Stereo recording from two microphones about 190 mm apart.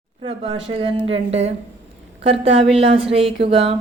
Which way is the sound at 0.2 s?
30° right (ahead or behind).